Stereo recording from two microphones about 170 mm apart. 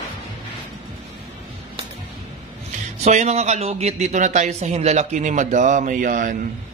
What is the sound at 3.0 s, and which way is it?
Speech, 40° right (ahead or behind).